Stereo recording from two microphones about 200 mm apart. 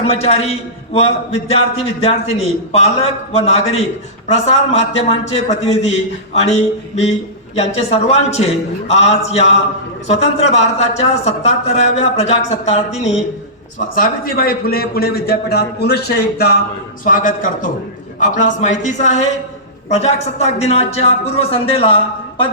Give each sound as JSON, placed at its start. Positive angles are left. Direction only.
{"t": 0.0, "sound": "a man's voice", "side_deg": 30}
{"t": 3.3, "sound": "a man's voice", "side_deg": 35}
{"t": 13.9, "sound": "a man's voice", "side_deg": 45}
{"t": 17.0, "sound": "a man's voice", "side_deg": 40}